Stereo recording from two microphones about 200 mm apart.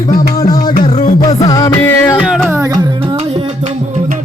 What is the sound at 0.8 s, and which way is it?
Music, 40° left (ahead or behind).